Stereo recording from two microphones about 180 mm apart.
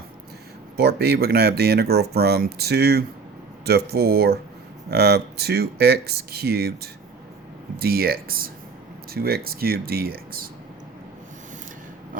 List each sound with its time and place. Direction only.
0.8 s speech: 60° right (ahead or behind)
7.8 s speech: 60° right (ahead or behind)